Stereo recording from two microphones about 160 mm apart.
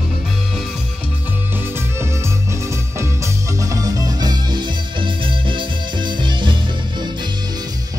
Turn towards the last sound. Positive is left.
turn(degrees=-30)  # may be behind; listen again after turning